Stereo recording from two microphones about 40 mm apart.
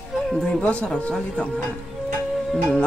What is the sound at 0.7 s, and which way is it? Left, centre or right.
Speech, left.